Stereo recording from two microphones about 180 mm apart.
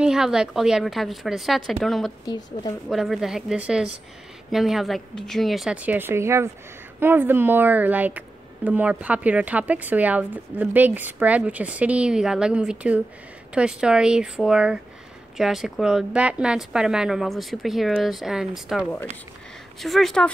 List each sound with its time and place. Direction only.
0.0 s a woman's voice: 5° right (ahead or behind)
2.2 s a woman's voice: 20° left (ahead or behind)
2.9 s a woman's voice: centre (ahead or behind)